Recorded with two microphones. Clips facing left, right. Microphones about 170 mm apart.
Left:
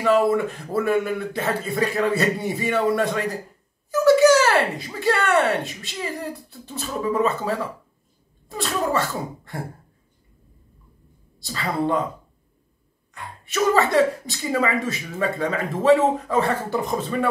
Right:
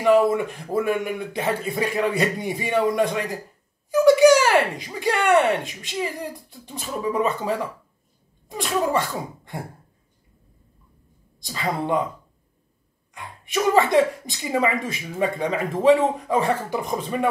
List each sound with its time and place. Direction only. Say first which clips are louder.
0.0 s a woman's voice: right 1 dB; 15° right (ahead or behind)
11.3 s a woman's voice: left 1 dB; 15° right (ahead or behind)
13.1 s a woman's voice: right 2 dB; 15° right (ahead or behind)